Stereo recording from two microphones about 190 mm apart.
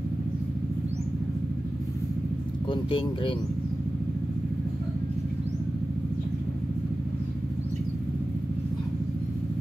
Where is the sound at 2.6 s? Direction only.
25° left (ahead or behind).